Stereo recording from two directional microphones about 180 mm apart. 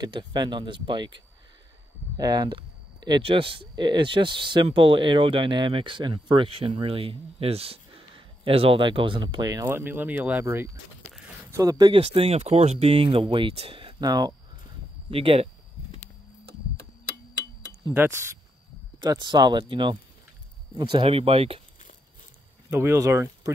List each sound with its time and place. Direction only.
0.0 s speech: 25° right (ahead or behind)
17.8 s speech: 15° right (ahead or behind); by 21.5 s 30° right (ahead or behind)
22.7 s speech: 15° right (ahead or behind)